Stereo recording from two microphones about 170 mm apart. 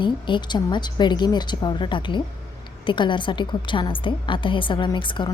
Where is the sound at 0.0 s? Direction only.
30° left (ahead or behind).